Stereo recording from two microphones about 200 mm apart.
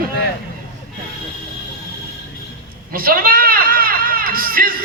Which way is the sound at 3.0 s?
45° right (ahead or behind).